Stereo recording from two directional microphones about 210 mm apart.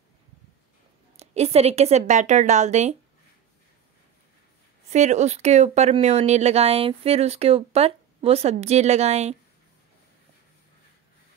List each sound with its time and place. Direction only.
1.1 s speech: 30° right (ahead or behind)
4.9 s speech: 35° right (ahead or behind)